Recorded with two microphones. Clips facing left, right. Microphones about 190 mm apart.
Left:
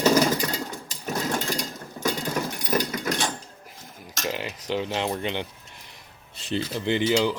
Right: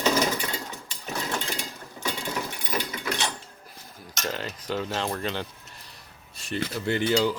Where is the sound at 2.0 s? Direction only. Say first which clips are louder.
Left 4 dB; 45° left (ahead or behind).